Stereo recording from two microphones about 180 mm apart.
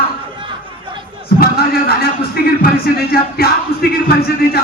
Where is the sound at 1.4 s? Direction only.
60° left (ahead or behind).